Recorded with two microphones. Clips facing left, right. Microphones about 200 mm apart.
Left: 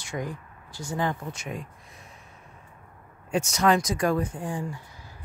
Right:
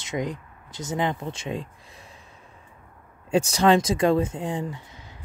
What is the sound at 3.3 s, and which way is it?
Speech, 30° right (ahead or behind).